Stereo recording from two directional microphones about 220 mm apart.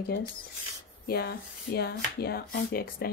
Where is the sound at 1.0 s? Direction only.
45° left (ahead or behind).